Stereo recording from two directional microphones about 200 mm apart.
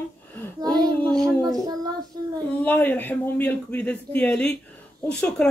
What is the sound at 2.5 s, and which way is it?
Speech, 10° left (ahead or behind).